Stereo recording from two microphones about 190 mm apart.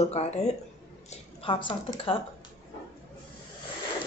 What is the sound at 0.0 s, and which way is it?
A woman's voice, 35° left (ahead or behind).